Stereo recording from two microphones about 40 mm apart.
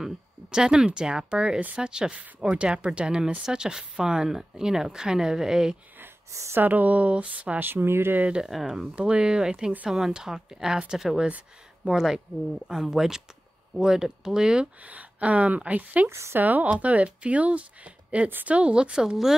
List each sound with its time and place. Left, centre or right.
0.0 s speech: centre
5.9 s a sound: right
6.7 s speech: right
7.5 s speech: right
8.5 s speech: centre
8.8 s speech: right
9.8 s speech: centre
11.2 s speech: right
12.0 s speech: centre
14.8 s speech: right